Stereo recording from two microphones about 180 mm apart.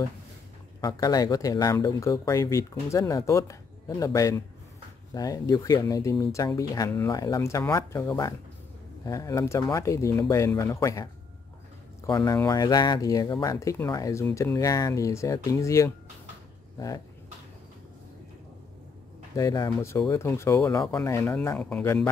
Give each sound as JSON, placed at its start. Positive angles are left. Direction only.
{"t": 0.7, "sound": "speech", "side_deg": 20}
{"t": 12.1, "sound": "speech", "side_deg": 20}
{"t": 19.3, "sound": "speech", "side_deg": 20}